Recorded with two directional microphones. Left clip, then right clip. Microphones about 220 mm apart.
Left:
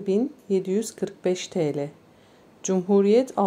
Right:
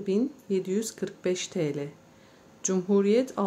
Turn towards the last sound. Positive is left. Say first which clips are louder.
# left 5 dB
turn(degrees=10)  # may be behind; listen again after turning